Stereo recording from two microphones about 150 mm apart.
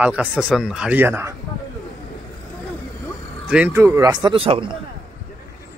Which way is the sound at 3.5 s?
15° right (ahead or behind).